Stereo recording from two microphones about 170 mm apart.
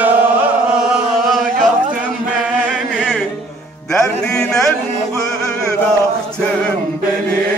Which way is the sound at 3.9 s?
5° left (ahead or behind).